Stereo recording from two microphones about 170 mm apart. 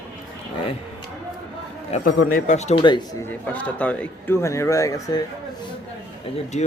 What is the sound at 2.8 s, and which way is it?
Speech, 25° left (ahead or behind).